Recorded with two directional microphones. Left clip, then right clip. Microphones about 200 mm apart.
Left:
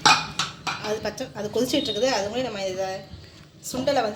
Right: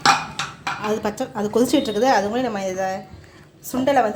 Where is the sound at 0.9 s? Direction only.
55° right (ahead or behind).